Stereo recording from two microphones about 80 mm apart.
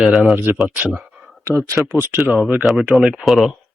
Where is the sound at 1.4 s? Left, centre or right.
Right.